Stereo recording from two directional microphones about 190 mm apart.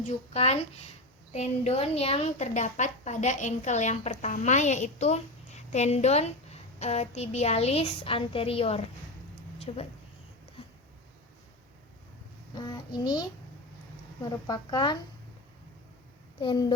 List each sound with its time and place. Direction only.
0.0 s a woman's voice: 35° left (ahead or behind)
10.6 s a sound: 30° left (ahead or behind)
12.5 s speech: 20° left (ahead or behind)
16.4 s speech: 25° left (ahead or behind)